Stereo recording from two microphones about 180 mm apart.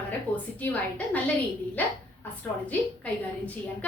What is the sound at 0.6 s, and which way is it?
A woman's voice, 10° left (ahead or behind).